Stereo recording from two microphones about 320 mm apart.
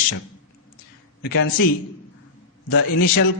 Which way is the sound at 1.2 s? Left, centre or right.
Left.